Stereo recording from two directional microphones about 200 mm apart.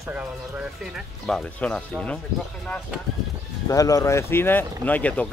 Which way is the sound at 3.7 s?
15° left (ahead or behind).